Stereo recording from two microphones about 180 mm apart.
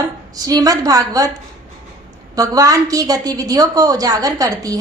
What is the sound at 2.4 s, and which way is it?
A woman's voice, 20° right (ahead or behind).